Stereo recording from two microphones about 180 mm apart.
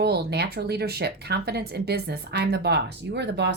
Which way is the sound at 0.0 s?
60° right (ahead or behind).